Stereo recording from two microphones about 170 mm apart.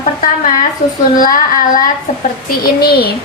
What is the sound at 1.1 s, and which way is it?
Child singing, 55° left (ahead or behind).